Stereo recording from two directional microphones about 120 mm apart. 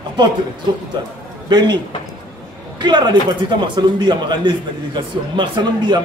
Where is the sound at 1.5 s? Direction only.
40° right (ahead or behind).